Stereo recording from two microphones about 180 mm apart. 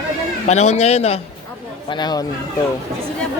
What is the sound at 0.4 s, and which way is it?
Speech, 40° left (ahead or behind).